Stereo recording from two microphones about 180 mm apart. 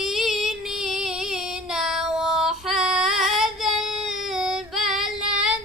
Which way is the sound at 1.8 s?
Centre (ahead or behind).